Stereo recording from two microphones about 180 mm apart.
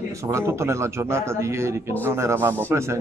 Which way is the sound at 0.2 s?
15° right (ahead or behind).